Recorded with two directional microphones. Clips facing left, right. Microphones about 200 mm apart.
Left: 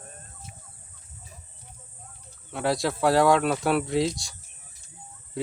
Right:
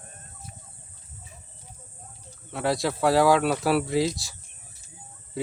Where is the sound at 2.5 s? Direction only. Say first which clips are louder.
Even; centre (ahead or behind).